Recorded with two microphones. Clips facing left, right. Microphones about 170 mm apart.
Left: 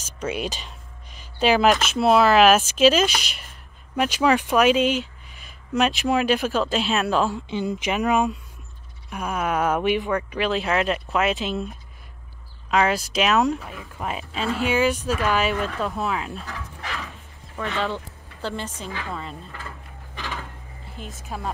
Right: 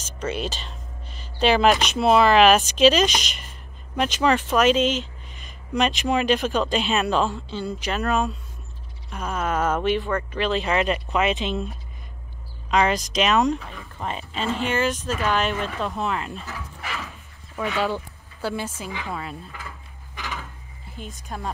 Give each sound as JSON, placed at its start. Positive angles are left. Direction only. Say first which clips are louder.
{"t": 0.0, "sound": "speech", "louder": "even", "side_deg": 10}
{"t": 7.3, "sound": "speech", "louder": "left 3 dB", "side_deg": 20}
{"t": 12.7, "sound": "speech", "louder": "even", "side_deg": 5}
{"t": 20.9, "sound": "speech", "louder": "even", "side_deg": 0}